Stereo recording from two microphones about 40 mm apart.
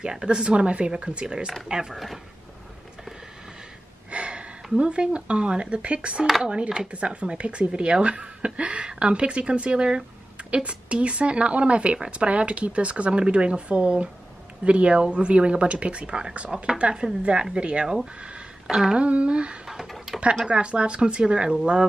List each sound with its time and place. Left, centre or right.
0.0 s speech: right
4.1 s gasp: right
4.7 s speech: right
18.7 s speech: centre
18.9 s speech: right
19.6 s a sound: centre
20.4 s speech: right